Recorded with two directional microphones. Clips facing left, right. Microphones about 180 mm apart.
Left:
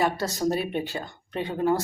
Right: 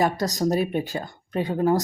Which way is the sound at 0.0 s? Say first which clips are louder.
Right 2 dB; 40° right (ahead or behind).